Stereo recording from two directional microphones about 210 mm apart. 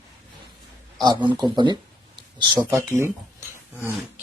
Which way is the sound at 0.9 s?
20° right (ahead or behind).